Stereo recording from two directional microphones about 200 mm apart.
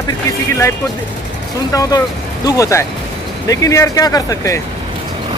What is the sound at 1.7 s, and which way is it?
Speech, 20° left (ahead or behind).